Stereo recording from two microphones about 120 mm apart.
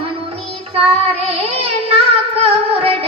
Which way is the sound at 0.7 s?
55° right (ahead or behind).